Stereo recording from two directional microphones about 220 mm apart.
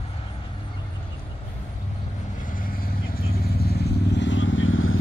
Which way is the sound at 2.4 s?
40° left (ahead or behind).